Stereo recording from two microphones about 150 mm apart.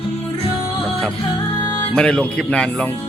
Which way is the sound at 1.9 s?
5° left (ahead or behind).